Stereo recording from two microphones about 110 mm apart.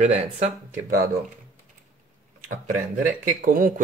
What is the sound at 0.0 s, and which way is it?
Speech, 90° right.